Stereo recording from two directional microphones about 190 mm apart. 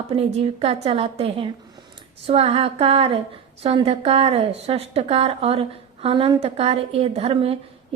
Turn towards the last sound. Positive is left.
turn(degrees=-30)  # may be behind; listen again after turning